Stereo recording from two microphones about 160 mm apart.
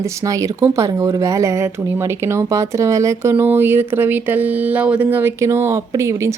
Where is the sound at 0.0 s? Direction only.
20° right (ahead or behind).